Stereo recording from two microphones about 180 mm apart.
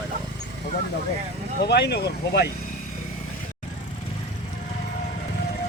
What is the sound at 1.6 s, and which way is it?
Speech, 65° left (ahead or behind).